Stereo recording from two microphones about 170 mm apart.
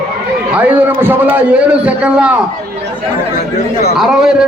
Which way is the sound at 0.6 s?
10° right (ahead or behind).